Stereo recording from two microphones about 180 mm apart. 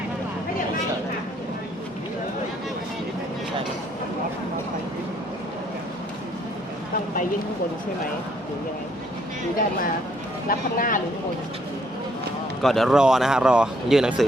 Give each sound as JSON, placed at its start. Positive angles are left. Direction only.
{"t": 10.5, "sound": "speech", "side_deg": 50}
{"t": 12.6, "sound": "speech", "side_deg": 0}